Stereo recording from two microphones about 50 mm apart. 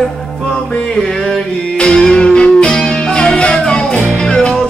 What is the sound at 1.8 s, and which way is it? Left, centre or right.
Music, centre.